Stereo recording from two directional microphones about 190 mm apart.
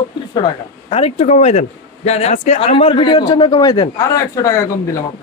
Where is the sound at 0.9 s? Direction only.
35° left (ahead or behind).